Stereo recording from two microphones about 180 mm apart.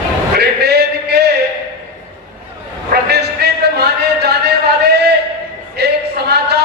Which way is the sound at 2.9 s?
65° right (ahead or behind).